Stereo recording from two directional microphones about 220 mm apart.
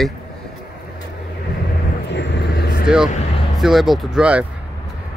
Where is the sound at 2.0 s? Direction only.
50° left (ahead or behind).